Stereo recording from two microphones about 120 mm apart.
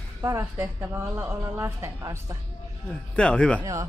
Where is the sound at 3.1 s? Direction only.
10° left (ahead or behind).